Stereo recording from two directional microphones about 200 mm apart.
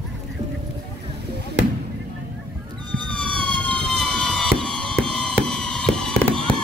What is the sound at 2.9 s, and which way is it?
Police car, 25° right (ahead or behind).